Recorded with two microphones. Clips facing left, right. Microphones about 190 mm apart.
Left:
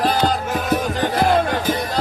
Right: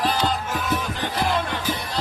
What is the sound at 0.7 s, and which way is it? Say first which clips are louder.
Music: left 8 dB; 45° left (ahead or behind).